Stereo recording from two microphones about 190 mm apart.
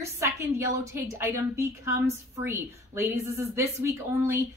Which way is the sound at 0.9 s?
15° right (ahead or behind).